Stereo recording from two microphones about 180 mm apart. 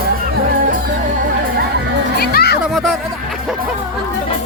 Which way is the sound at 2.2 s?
60° left (ahead or behind).